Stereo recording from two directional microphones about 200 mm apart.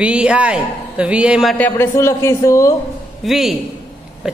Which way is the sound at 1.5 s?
10° left (ahead or behind).